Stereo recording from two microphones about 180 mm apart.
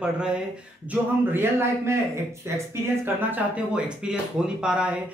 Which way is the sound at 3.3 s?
5° right (ahead or behind).